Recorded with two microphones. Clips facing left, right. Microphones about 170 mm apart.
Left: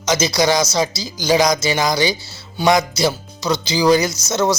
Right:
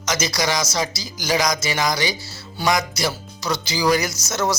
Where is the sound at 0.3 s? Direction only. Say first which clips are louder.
Left 6 dB; 25° left (ahead or behind).